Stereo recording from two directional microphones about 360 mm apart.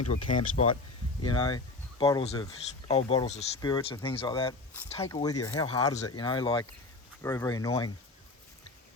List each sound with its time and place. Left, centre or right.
0.0 s speech: left
1.2 s speech: centre